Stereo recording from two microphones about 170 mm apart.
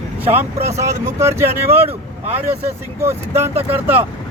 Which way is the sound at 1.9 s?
40° right (ahead or behind).